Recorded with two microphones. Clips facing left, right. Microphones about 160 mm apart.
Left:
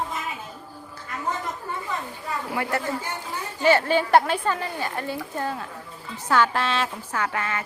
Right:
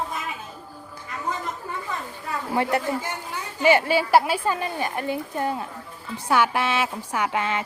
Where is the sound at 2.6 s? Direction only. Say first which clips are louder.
Right 5 dB; 15° right (ahead or behind).